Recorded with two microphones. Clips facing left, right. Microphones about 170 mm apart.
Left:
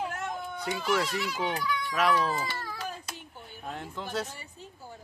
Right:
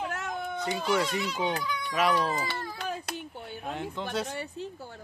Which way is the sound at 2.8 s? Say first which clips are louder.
Right 4 dB; 70° right (ahead or behind).